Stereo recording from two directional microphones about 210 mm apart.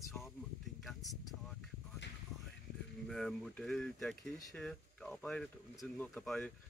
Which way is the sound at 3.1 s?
Centre (ahead or behind).